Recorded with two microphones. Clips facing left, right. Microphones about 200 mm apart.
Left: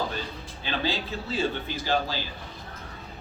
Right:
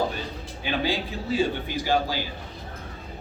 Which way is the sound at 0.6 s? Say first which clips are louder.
Right 3 dB; 15° right (ahead or behind).